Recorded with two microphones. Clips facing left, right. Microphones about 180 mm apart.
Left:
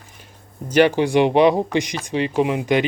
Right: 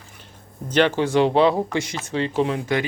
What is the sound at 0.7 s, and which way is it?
Speech, 10° left (ahead or behind).